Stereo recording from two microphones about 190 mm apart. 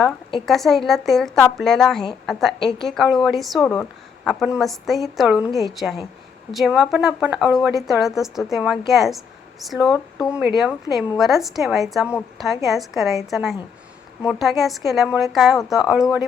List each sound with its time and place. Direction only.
0.4 s a woman's voice: centre (ahead or behind)
9.9 s speech: 15° left (ahead or behind)
10.4 s a woman's voice: 5° right (ahead or behind)